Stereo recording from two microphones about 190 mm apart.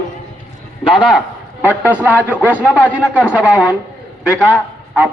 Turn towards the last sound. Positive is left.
turn(degrees=-10)  # may be behind; listen again after turning